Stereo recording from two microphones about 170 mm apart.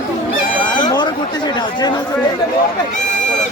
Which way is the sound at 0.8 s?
25° left (ahead or behind).